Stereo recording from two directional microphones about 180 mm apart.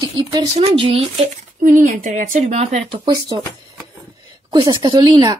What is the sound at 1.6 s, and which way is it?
Speech, 45° right (ahead or behind).